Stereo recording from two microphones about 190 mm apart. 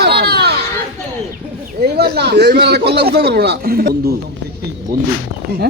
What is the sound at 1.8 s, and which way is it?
A man's voice, 60° right (ahead or behind).